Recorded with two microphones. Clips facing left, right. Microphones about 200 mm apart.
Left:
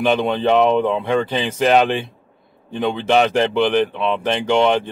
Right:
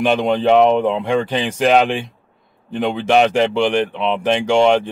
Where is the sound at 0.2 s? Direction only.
10° right (ahead or behind).